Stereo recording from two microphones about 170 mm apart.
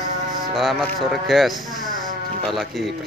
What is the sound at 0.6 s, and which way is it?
Speech, centre (ahead or behind).